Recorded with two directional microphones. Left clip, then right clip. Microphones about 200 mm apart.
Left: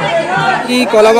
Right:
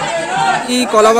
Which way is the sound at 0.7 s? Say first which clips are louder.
Left 3 dB; 35° right (ahead or behind).